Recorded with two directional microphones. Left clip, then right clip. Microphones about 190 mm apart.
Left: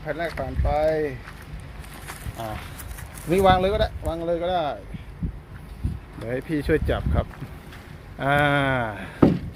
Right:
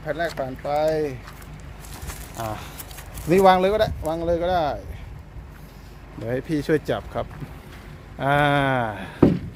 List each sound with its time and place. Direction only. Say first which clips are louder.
0.0 s speech: right 2 dB; 10° right (ahead or behind)
3.2 s speech: right 3 dB; 35° right (ahead or behind)
6.2 s speech: right 1 dB; 15° right (ahead or behind)